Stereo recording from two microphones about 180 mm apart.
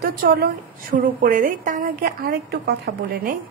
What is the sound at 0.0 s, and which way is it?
A woman's voice, 60° right (ahead or behind).